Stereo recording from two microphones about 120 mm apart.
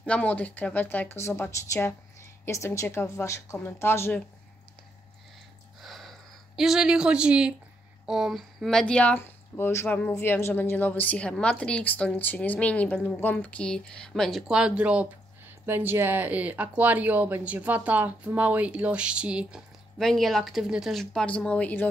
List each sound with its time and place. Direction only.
0.0 s a woman's voice: 10° left (ahead or behind)
5.8 s a sound: centre (ahead or behind)
8.1 s speech: 5° right (ahead or behind)
9.2 s a woman's voice: 20° left (ahead or behind); by 19.6 s 10° right (ahead or behind)
20.0 s speech: centre (ahead or behind)